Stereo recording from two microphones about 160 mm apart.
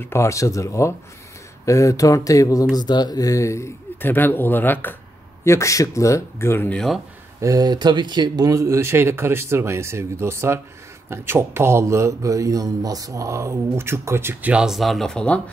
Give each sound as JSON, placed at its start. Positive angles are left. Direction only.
{"t": 0.0, "sound": "speech", "side_deg": 15}
{"t": 7.3, "sound": "speech", "side_deg": -20}